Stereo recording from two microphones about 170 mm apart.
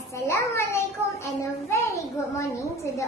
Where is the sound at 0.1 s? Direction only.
15° left (ahead or behind).